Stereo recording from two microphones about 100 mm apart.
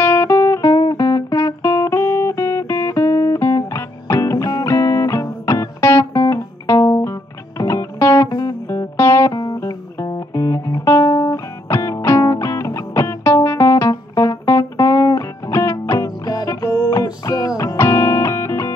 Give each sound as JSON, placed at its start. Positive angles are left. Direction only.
{"t": 0.0, "sound": "music", "side_deg": 25}
{"t": 9.3, "sound": "music", "side_deg": 40}